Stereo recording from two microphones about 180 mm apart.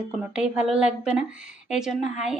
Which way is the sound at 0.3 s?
5° right (ahead or behind).